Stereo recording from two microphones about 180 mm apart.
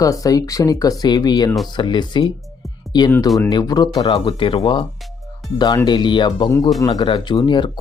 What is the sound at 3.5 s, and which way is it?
Speech, 20° left (ahead or behind).